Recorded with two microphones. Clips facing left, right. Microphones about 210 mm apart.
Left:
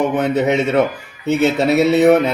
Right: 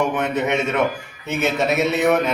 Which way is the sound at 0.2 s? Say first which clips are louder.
Left 5 dB; 35° left (ahead or behind).